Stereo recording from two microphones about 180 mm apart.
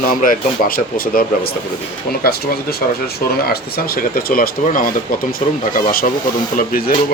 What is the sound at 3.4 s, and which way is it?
Speech, 60° left (ahead or behind).